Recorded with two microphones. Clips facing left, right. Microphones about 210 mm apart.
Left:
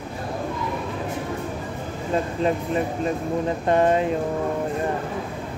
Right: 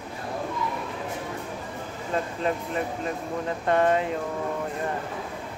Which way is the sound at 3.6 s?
25° left (ahead or behind).